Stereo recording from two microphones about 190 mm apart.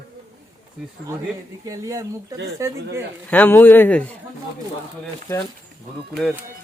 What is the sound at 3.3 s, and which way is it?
Speech, 10° left (ahead or behind).